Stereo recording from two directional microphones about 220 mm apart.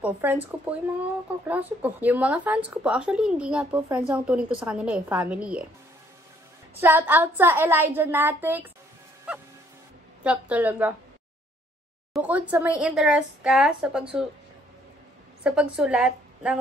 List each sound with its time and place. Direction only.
0.0 s speech: 10° right (ahead or behind)
6.8 s speech: 10° right (ahead or behind)
12.1 s speech: 5° right (ahead or behind)
15.4 s a woman's voice: 5° right (ahead or behind)